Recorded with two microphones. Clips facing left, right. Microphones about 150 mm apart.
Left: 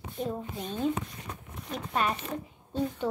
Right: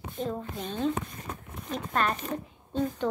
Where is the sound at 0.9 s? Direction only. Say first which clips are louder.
Right 1 dB; 45° right (ahead or behind).